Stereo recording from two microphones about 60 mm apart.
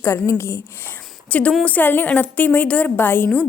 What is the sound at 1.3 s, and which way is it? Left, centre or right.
A woman's voice, left.